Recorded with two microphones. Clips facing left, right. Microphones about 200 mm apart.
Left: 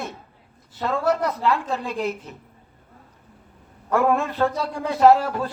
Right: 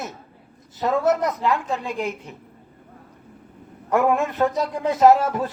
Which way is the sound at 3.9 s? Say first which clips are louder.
Right 1 dB; 15° right (ahead or behind).